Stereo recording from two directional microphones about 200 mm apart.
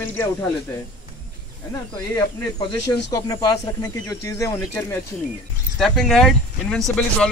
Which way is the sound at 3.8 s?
15° left (ahead or behind).